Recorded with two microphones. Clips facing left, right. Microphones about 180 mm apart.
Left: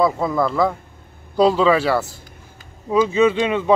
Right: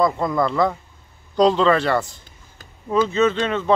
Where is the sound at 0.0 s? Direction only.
5° left (ahead or behind).